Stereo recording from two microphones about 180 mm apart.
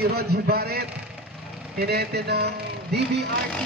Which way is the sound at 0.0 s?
60° right (ahead or behind).